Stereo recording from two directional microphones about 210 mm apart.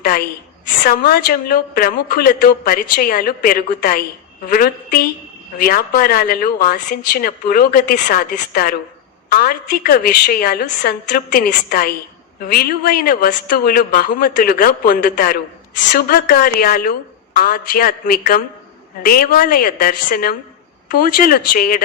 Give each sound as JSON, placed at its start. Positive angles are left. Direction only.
{"t": 0.8, "sound": "a woman's voice", "side_deg": 45}